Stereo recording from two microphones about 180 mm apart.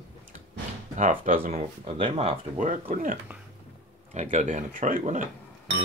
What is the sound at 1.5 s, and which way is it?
Speech, 35° right (ahead or behind).